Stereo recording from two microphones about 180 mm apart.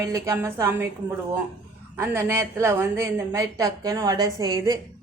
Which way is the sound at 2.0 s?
15° right (ahead or behind).